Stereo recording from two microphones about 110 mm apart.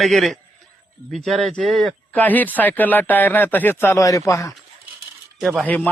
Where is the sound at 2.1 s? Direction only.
15° left (ahead or behind).